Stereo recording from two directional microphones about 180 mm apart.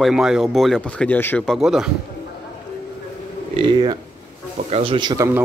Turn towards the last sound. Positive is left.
turn(degrees=-15)  # may be behind; listen again after turning